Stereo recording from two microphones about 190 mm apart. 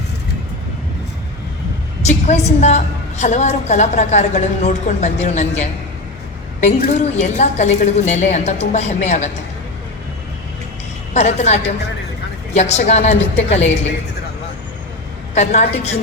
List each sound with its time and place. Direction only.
2.0 s a woman's voice: 35° left (ahead or behind)
11.1 s a woman's voice: 35° left (ahead or behind)
15.4 s a woman's voice: 35° left (ahead or behind)